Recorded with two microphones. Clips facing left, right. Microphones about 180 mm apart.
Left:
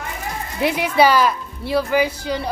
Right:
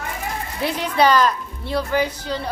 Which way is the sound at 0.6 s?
10° left (ahead or behind).